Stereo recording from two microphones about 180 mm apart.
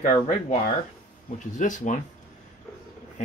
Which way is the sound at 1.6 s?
45° left (ahead or behind).